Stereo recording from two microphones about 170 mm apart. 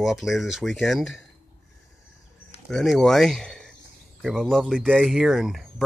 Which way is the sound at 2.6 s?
Centre (ahead or behind).